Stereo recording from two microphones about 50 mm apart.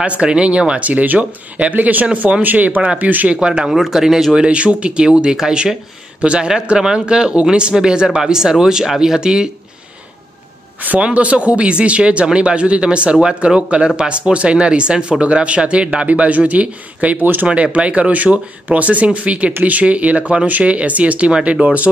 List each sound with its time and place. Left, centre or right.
0.0 s speech: right
3.3 s speech: centre
3.7 s speech: centre
4.4 s speech: right
11.0 s speech: right
17.2 s speech: right
17.7 s speech: right